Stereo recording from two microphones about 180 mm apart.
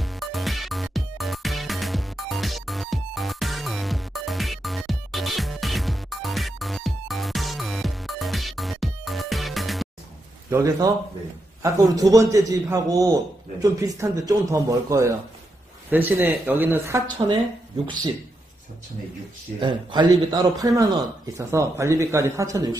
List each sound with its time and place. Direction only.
0.0 s music: centre (ahead or behind)
10.5 s a man's voice: 15° right (ahead or behind)
19.6 s a man's voice: 25° right (ahead or behind)